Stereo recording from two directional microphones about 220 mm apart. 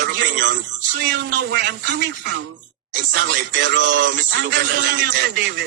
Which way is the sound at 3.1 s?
45° right (ahead or behind).